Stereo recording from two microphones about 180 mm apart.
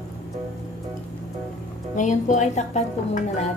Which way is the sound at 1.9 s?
45° left (ahead or behind).